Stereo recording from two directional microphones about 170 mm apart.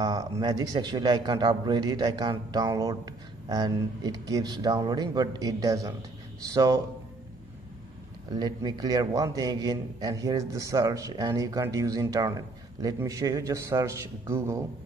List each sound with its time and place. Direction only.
0.0 s a man's voice: 25° right (ahead or behind)
8.3 s a man's voice: 25° right (ahead or behind)